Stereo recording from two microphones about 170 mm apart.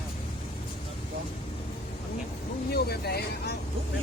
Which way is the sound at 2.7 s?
70° left (ahead or behind).